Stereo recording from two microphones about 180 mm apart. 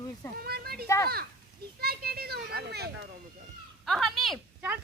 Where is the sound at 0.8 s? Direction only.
15° left (ahead or behind).